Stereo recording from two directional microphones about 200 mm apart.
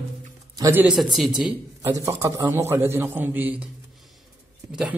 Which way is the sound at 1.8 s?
15° right (ahead or behind).